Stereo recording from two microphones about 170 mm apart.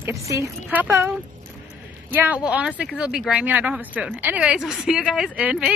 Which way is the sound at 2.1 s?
10° right (ahead or behind).